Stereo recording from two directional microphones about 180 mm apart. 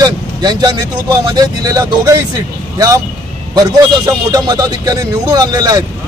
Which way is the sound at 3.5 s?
20° right (ahead or behind).